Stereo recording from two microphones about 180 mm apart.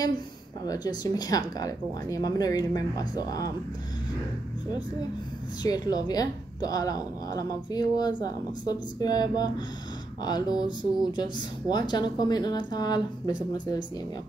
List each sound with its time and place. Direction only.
0.7 s a woman's voice: 20° left (ahead or behind)
5.6 s a woman's voice: 20° left (ahead or behind)